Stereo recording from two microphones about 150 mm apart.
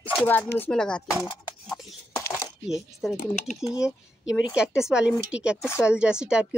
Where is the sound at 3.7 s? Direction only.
5° right (ahead or behind).